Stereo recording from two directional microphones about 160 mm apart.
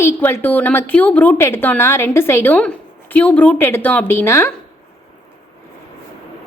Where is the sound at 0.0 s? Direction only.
15° left (ahead or behind).